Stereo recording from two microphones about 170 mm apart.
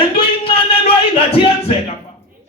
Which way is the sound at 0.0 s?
30° left (ahead or behind).